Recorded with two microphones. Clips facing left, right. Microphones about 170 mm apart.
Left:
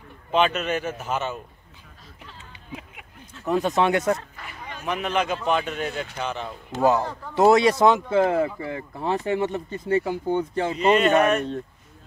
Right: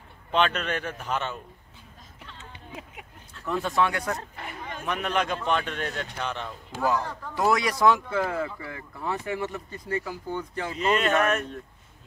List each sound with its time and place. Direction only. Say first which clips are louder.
0.3 s speech: left 3 dB; 5° left (ahead or behind)
3.4 s speech: left 4 dB; 20° left (ahead or behind)
4.8 s speech: left 3 dB; 5° left (ahead or behind)
6.8 s speech: left 6 dB; 20° left (ahead or behind)
10.8 s speech: left 5 dB; centre (ahead or behind)